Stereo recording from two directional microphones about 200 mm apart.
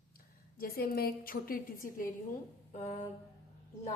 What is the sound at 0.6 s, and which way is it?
A woman's voice, 50° left (ahead or behind).